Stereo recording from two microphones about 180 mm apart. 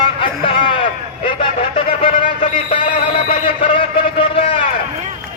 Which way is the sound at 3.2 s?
30° left (ahead or behind).